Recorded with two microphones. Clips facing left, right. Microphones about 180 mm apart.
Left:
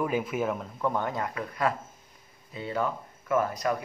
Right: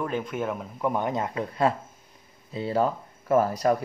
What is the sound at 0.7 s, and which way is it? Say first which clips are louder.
Speech: right 5 dB; 15° right (ahead or behind).